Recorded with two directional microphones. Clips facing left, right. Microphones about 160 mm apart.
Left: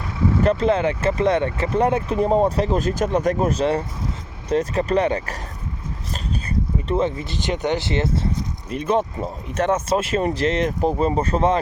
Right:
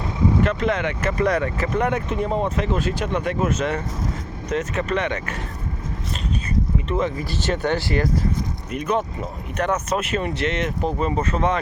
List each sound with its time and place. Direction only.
0.4 s speech: 30° left (ahead or behind)
6.8 s speech: 30° left (ahead or behind)